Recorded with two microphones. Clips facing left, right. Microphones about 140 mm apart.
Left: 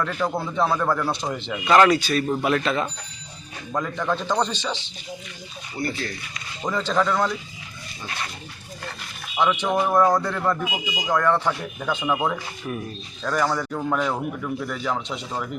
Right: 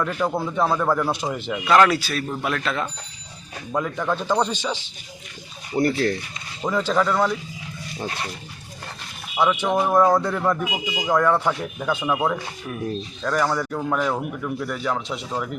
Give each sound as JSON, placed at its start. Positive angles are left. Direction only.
{"t": 0.0, "sound": "a man's voice", "side_deg": -5}
{"t": 5.7, "sound": "speech", "side_deg": -55}
{"t": 6.6, "sound": "a man's voice", "side_deg": -5}
{"t": 7.9, "sound": "speech", "side_deg": -35}
{"t": 9.3, "sound": "a man's voice", "side_deg": -10}